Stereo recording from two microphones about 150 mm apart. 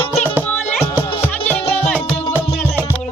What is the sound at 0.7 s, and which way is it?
Music, 15° left (ahead or behind).